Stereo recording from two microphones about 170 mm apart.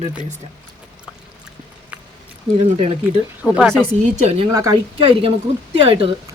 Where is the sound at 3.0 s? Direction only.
5° right (ahead or behind).